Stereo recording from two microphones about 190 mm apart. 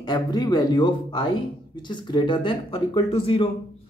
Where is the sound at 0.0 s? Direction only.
20° left (ahead or behind).